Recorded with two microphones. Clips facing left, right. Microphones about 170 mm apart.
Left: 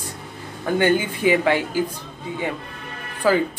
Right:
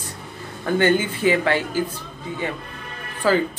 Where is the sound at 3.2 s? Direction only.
15° left (ahead or behind).